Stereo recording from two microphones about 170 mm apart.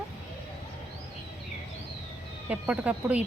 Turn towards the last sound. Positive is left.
turn(degrees=-10)  # may be behind; listen again after turning